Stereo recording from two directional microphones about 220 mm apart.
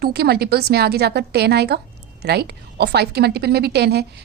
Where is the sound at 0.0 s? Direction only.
45° right (ahead or behind).